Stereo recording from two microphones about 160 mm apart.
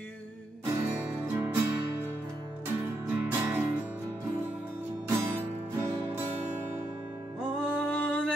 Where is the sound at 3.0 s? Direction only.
10° right (ahead or behind).